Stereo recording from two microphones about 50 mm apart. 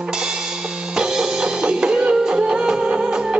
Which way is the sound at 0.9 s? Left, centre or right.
Centre.